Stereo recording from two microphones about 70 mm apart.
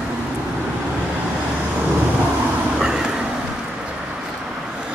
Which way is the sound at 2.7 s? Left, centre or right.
Centre.